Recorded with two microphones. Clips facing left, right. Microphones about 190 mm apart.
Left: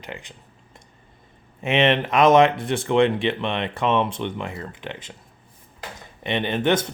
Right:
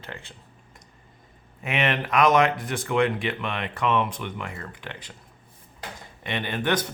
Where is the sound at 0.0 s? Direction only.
15° left (ahead or behind).